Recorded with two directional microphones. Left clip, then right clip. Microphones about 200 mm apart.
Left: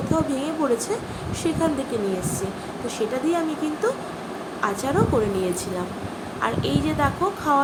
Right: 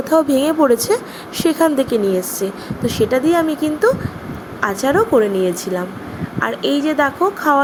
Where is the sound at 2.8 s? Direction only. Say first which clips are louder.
Right 9 dB; 45° right (ahead or behind).